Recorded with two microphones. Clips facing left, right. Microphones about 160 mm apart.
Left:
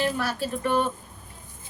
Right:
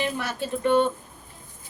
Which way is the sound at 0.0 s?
20° right (ahead or behind).